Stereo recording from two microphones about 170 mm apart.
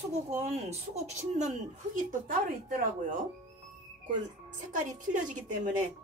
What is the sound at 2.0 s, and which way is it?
Speech, 55° right (ahead or behind).